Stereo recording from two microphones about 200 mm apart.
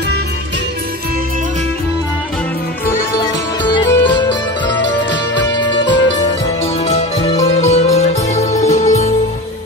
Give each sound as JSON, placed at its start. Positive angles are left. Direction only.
{"t": 3.6, "sound": "music", "side_deg": 20}
{"t": 5.6, "sound": "music", "side_deg": 25}